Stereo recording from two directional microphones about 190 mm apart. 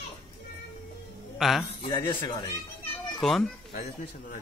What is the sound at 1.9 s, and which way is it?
Speech, 20° left (ahead or behind).